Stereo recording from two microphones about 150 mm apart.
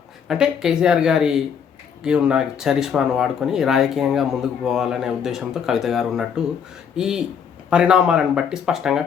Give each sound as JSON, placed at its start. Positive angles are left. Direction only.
{"t": 0.3, "sound": "speech", "side_deg": -5}